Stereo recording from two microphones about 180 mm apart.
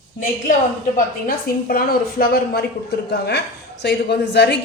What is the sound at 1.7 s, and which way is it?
A woman's voice, 55° left (ahead or behind).